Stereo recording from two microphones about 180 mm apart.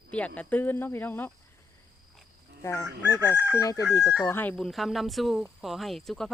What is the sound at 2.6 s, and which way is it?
Fowl, 15° left (ahead or behind).